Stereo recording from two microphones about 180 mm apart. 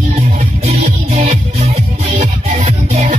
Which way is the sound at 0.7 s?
40° right (ahead or behind).